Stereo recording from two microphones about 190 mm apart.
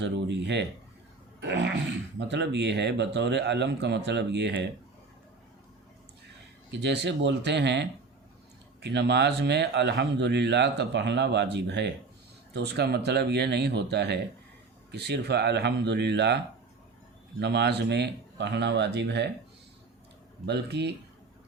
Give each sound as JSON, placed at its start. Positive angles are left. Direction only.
{"t": 0.0, "sound": "speech", "side_deg": -65}
{"t": 6.7, "sound": "speech", "side_deg": -65}
{"t": 17.4, "sound": "speech", "side_deg": -65}
{"t": 20.4, "sound": "speech", "side_deg": -60}